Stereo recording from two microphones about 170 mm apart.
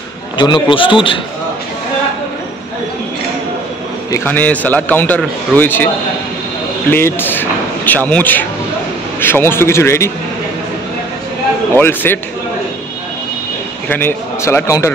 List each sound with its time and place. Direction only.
0.4 s a man's voice: 30° left (ahead or behind)
4.1 s a man's voice: 10° left (ahead or behind)
6.9 s a man's voice: 15° left (ahead or behind)
11.7 s a man's voice: 10° left (ahead or behind)
13.8 s a man's voice: 10° left (ahead or behind)